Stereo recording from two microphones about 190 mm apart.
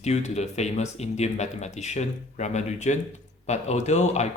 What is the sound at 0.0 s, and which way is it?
Speech, 35° left (ahead or behind).